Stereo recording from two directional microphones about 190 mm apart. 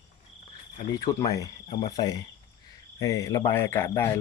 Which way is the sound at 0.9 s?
15° left (ahead or behind).